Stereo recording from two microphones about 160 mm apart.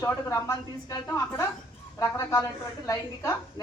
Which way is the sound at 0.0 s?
20° left (ahead or behind).